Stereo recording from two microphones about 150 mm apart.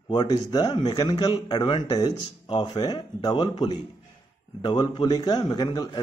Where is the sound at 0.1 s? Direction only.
30° left (ahead or behind).